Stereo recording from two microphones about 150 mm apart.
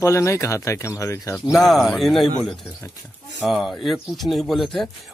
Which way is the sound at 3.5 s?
Centre (ahead or behind).